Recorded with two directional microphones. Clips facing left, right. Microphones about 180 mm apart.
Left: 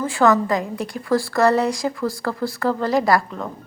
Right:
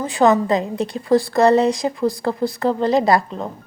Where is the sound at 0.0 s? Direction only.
20° right (ahead or behind).